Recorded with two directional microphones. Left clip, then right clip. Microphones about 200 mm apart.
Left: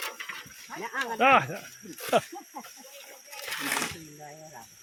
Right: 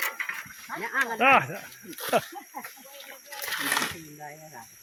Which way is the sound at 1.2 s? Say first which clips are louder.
Even; 10° left (ahead or behind).